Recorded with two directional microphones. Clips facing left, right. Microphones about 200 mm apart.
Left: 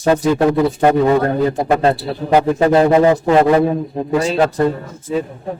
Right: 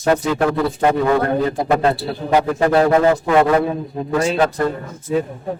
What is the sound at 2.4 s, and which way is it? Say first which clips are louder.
Speech: left 3 dB; 20° left (ahead or behind).